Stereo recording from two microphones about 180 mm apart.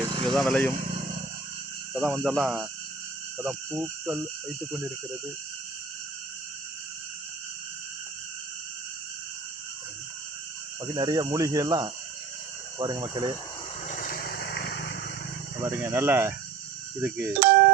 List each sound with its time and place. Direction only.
0.0 s vehicle: 25° right (ahead or behind)
0.3 s speech: centre (ahead or behind)
1.9 s speech: centre (ahead or behind)
10.8 s speech: 25° right (ahead or behind)
13.8 s vehicle: 45° left (ahead or behind); by 14.9 s 65° left (ahead or behind)
15.8 s speech: 15° right (ahead or behind)